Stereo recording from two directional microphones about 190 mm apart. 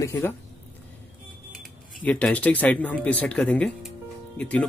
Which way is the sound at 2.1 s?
5° left (ahead or behind).